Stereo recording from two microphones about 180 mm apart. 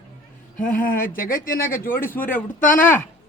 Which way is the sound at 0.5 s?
50° left (ahead or behind).